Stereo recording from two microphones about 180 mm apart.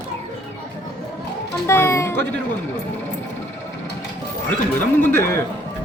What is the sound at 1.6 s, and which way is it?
Speech, 15° left (ahead or behind).